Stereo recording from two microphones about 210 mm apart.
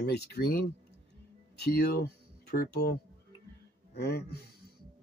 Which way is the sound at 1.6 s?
50° left (ahead or behind).